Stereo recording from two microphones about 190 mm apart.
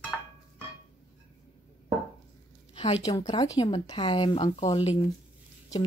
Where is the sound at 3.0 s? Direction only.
20° left (ahead or behind).